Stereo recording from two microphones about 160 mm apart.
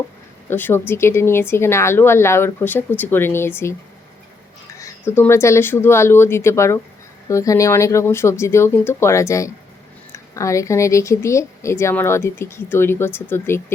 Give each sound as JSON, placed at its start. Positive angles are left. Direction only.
{"t": 0.5, "sound": "speech", "side_deg": 15}
{"t": 4.8, "sound": "speech", "side_deg": 15}